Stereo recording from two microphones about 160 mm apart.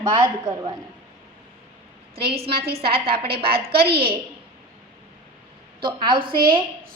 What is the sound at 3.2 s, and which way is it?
Speech, 75° right (ahead or behind).